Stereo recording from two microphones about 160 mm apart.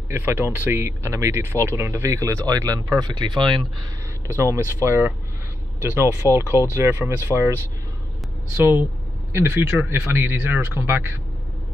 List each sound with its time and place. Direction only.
0.1 s speech: 15° right (ahead or behind); by 3.6 s 30° right (ahead or behind)
4.3 s speech: 20° right (ahead or behind)